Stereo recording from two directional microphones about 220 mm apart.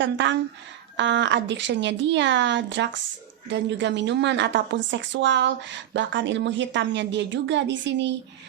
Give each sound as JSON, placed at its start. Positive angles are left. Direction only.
{"t": 0.0, "sound": "a woman's voice", "side_deg": -55}